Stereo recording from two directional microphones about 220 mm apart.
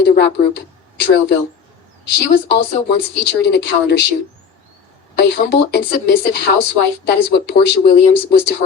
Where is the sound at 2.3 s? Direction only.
50° left (ahead or behind).